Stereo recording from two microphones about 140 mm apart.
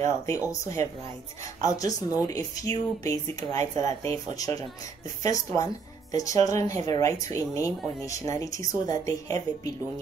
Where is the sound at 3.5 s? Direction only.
45° right (ahead or behind).